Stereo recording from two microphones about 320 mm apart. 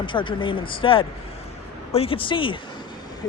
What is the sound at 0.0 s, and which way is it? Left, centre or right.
Speech, centre.